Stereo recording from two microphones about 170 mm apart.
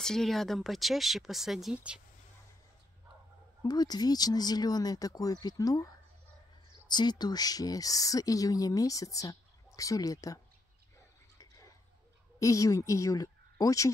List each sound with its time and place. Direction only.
0.0 s speech: centre (ahead or behind)
3.6 s speech: 25° left (ahead or behind)
12.4 s speech: 20° left (ahead or behind)